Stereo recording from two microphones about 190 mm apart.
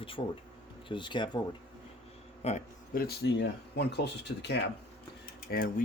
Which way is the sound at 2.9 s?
55° left (ahead or behind).